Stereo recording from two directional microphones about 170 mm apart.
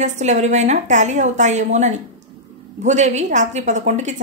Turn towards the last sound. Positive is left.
turn(degrees=-45)  # may be behind; listen again after turning